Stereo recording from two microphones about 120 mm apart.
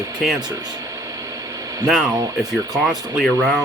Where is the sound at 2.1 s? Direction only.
30° right (ahead or behind).